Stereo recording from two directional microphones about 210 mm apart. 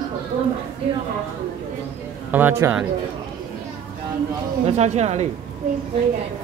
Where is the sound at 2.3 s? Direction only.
10° right (ahead or behind).